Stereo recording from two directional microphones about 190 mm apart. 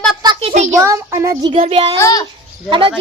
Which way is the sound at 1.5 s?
35° right (ahead or behind).